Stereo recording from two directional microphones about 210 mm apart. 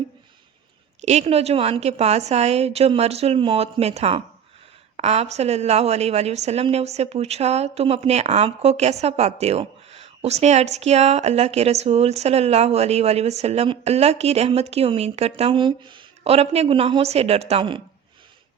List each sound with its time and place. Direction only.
1.0 s a woman's voice: 30° right (ahead or behind)